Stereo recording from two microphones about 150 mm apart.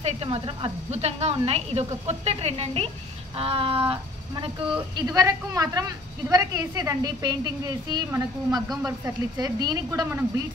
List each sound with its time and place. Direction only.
0.0 s speech: 35° right (ahead or behind)
4.9 s a woman's voice: 25° right (ahead or behind)